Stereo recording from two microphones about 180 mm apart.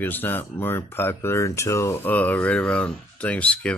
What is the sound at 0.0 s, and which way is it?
Speech, 10° left (ahead or behind).